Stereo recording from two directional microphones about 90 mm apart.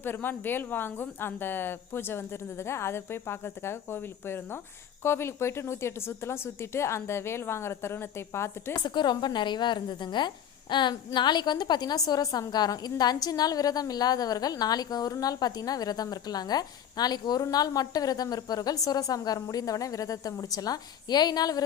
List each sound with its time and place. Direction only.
0.0 s a woman's voice: 20° left (ahead or behind)
8.7 s a woman's voice: 55° left (ahead or behind)